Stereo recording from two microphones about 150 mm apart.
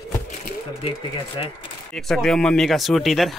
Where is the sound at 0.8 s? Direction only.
35° left (ahead or behind).